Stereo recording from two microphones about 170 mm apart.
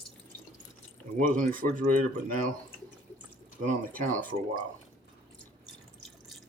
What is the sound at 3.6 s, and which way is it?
Speech, 50° right (ahead or behind).